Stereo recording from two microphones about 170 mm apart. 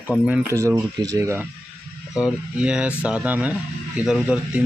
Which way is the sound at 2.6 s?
5° right (ahead or behind).